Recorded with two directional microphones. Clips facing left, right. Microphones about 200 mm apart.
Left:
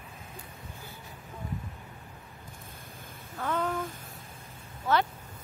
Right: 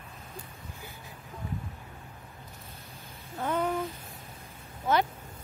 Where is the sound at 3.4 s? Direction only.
20° right (ahead or behind).